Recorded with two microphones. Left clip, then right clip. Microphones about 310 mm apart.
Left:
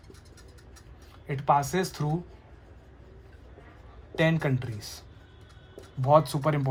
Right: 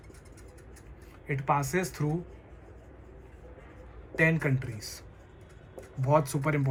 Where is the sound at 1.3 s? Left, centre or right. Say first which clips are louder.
Left 4 dB; centre.